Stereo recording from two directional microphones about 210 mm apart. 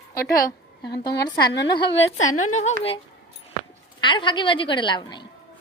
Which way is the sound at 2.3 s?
90° left.